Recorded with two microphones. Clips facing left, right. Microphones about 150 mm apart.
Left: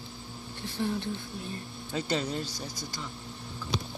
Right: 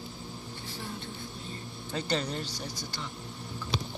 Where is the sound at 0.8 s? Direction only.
60° left (ahead or behind).